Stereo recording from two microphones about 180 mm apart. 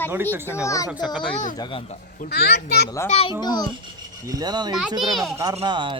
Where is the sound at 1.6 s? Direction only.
30° left (ahead or behind).